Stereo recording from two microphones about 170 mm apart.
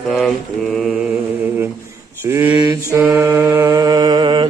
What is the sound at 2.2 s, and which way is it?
Mantra, 15° right (ahead or behind).